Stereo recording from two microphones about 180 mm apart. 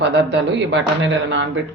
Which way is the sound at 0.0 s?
75° right (ahead or behind).